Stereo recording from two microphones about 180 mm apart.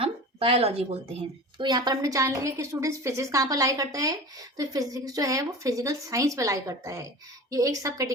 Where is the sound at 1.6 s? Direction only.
25° right (ahead or behind).